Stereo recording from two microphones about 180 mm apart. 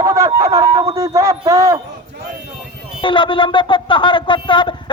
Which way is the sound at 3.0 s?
25° left (ahead or behind).